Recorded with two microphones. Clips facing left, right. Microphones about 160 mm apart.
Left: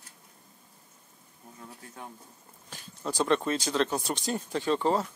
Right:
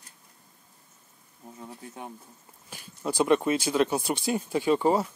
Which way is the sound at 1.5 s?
20° right (ahead or behind).